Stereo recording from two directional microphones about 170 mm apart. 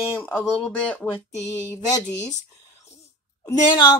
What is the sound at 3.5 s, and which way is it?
Speech, 20° left (ahead or behind).